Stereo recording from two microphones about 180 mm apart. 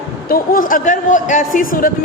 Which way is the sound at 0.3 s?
50° left (ahead or behind).